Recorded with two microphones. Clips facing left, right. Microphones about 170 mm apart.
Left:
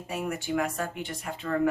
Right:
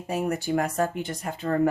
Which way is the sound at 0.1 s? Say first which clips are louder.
Right 5 dB; 40° right (ahead or behind).